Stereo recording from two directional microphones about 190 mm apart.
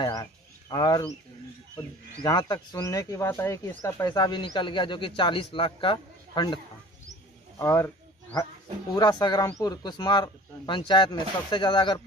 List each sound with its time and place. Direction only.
0.0 s bird: 20° left (ahead or behind)
2.2 s speech: 20° left (ahead or behind)
7.5 s wild animals: 15° left (ahead or behind)
8.9 s speech: 20° left (ahead or behind)